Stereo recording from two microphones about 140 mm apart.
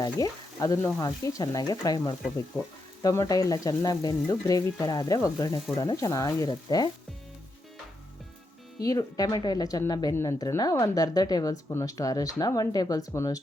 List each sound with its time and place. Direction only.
0.0 s frying: 25° left (ahead or behind)
0.9 s speech: 25° left (ahead or behind)
8.8 s speech: 25° left (ahead or behind)